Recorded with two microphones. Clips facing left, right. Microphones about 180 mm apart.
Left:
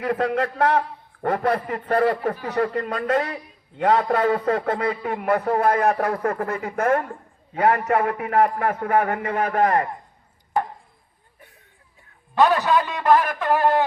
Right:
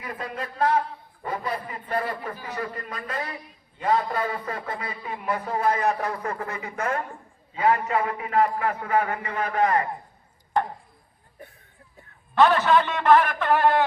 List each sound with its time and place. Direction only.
0.0 s a man's voice: 75° left (ahead or behind); by 9.8 s 45° left (ahead or behind)
12.6 s a man's voice: 15° left (ahead or behind)
13.1 s a sound: 40° left (ahead or behind)